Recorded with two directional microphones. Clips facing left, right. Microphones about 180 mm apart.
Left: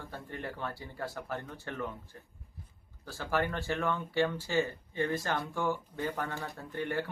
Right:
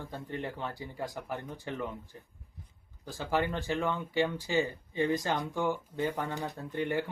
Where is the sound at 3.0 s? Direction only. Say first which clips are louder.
Right 1 dB; 15° right (ahead or behind).